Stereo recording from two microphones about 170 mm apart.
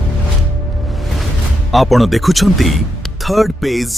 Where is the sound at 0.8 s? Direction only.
Centre (ahead or behind).